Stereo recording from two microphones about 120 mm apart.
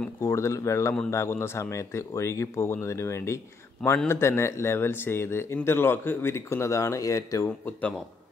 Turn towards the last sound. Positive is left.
turn(degrees=15)  # may be behind; listen again after turning